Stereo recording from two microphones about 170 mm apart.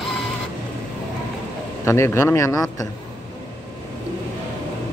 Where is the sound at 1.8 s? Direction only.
15° left (ahead or behind).